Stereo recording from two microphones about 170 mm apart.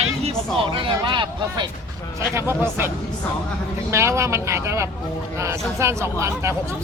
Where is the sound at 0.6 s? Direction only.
30° right (ahead or behind).